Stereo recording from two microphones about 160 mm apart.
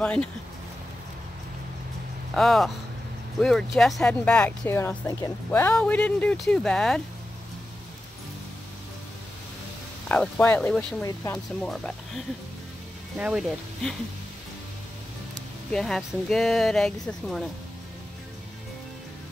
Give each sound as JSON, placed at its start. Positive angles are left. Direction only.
{"t": 0.0, "sound": "speech", "side_deg": 5}
{"t": 2.3, "sound": "speech", "side_deg": 0}
{"t": 10.0, "sound": "speech", "side_deg": 5}
{"t": 11.0, "sound": "speech", "side_deg": 20}
{"t": 11.3, "sound": "speech", "side_deg": 5}
{"t": 13.2, "sound": "speech", "side_deg": -5}
{"t": 15.3, "sound": "speech", "side_deg": 5}